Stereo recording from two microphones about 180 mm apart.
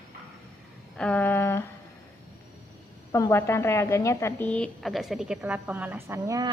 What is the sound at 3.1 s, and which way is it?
A woman's voice, 15° left (ahead or behind).